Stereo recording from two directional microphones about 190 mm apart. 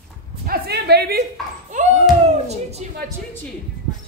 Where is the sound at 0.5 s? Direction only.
60° right (ahead or behind).